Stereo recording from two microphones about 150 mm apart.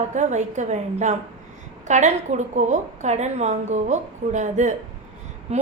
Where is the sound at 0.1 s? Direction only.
55° right (ahead or behind).